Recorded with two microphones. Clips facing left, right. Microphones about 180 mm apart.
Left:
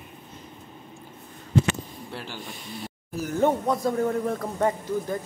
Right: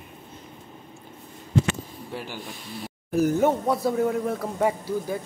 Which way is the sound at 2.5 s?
Centre (ahead or behind).